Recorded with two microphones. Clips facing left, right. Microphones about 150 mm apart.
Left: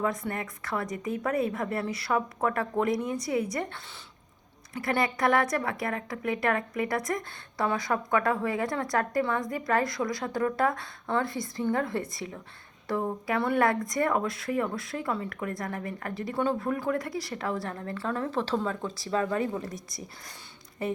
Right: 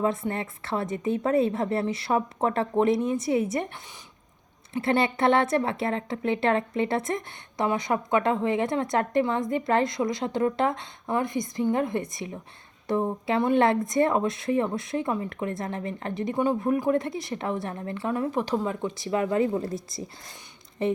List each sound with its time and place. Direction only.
0.0 s a woman's voice: 25° right (ahead or behind)
4.7 s a woman's voice: 25° right (ahead or behind)
20.8 s a woman's voice: 20° right (ahead or behind)